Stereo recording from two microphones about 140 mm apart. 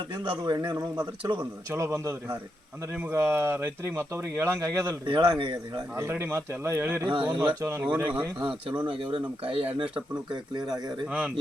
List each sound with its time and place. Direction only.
0.1 s a man's voice: 30° right (ahead or behind)
1.4 s a man's voice: 20° right (ahead or behind)
5.0 s a man's voice: 35° right (ahead or behind)
6.0 s speech: 15° right (ahead or behind)
8.8 s a man's voice: 35° right (ahead or behind)
11.0 s speech: 10° right (ahead or behind)